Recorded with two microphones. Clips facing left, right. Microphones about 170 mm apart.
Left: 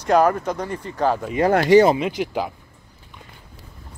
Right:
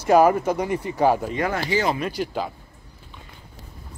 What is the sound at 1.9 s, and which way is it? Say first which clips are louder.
Speech: left 3 dB; 15° left (ahead or behind).